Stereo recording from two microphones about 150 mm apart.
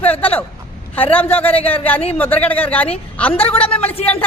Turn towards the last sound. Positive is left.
turn(degrees=10)  # may be behind; listen again after turning